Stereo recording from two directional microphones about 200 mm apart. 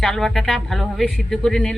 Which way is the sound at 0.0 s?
Centre (ahead or behind).